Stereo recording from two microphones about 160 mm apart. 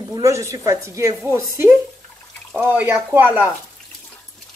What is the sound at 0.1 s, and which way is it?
Speech, 20° right (ahead or behind).